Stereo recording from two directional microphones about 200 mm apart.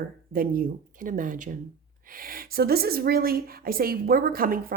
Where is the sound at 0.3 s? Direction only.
45° right (ahead or behind).